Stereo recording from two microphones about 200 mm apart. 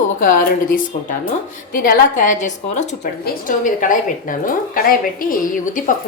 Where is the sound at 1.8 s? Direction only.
40° left (ahead or behind).